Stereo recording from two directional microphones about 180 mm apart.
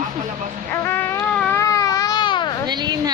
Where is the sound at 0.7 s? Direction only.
15° left (ahead or behind).